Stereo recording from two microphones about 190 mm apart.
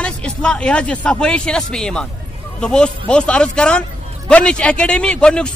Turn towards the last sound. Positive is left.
turn(degrees=5)  # may be behind; listen again after turning